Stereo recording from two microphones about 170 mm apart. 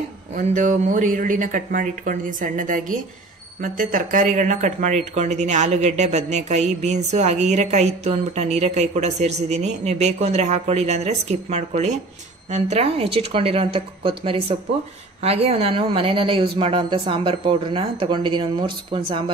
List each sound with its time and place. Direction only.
0.4 s speech: 45° right (ahead or behind); by 19.3 s 30° right (ahead or behind)